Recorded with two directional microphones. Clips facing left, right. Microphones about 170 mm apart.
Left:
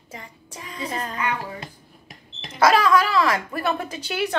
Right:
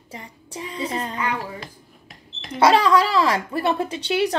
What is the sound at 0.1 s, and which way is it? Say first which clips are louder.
Child singing: right 3 dB; 30° right (ahead or behind).